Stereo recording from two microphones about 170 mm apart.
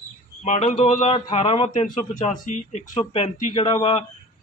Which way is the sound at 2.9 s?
30° left (ahead or behind).